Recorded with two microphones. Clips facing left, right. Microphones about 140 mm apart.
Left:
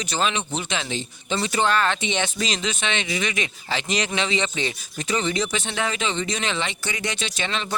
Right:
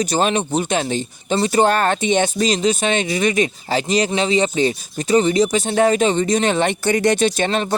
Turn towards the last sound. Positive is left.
turn(degrees=-50)  # may be behind; listen again after turning